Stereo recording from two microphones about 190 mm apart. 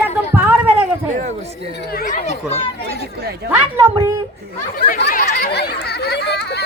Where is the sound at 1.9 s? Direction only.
45° left (ahead or behind).